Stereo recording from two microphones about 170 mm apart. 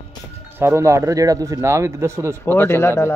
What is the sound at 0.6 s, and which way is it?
Speech, 15° right (ahead or behind).